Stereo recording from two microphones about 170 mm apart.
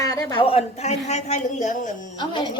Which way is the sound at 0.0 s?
20° left (ahead or behind).